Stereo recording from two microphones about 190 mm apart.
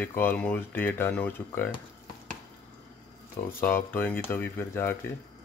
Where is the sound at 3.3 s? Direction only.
10° left (ahead or behind).